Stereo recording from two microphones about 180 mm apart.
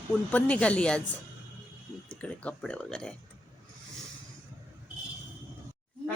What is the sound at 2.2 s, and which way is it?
Speech, 5° left (ahead or behind).